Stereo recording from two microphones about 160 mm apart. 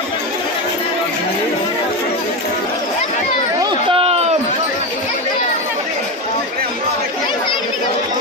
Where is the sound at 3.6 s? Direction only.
30° right (ahead or behind).